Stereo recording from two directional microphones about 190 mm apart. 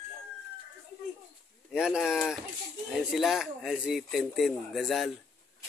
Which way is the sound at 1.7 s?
5° right (ahead or behind).